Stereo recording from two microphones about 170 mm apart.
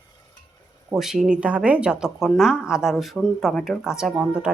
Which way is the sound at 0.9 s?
Centre (ahead or behind).